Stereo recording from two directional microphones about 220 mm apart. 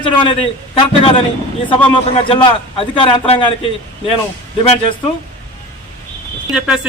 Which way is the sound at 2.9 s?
25° left (ahead or behind).